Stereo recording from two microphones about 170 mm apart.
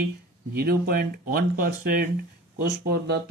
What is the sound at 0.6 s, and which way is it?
Speech, 60° right (ahead or behind).